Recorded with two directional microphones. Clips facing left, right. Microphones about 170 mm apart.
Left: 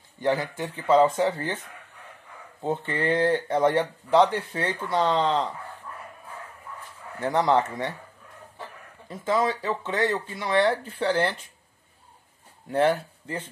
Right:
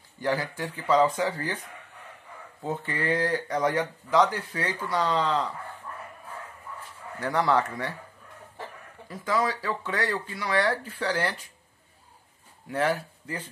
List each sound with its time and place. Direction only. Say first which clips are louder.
0.2 s speech: left 3 dB; 25° left (ahead or behind)
7.2 s speech: left 2 dB; 20° left (ahead or behind)
9.1 s speech: left 3 dB; 25° left (ahead or behind)
12.7 s speech: left 4 dB; 25° left (ahead or behind)